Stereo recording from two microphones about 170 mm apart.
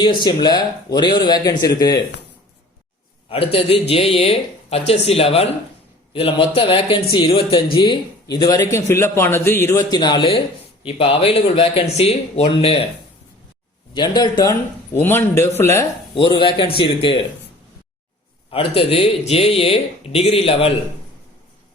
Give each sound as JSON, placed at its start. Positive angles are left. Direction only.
{"t": 0.3, "sound": "a man's voice", "side_deg": 25}
{"t": 3.2, "sound": "a man's voice", "side_deg": 35}
{"t": 13.9, "sound": "a man's voice", "side_deg": 25}
{"t": 14.9, "sound": "a man's voice", "side_deg": 15}
{"t": 16.1, "sound": "a man's voice", "side_deg": 30}
{"t": 18.5, "sound": "speech", "side_deg": 35}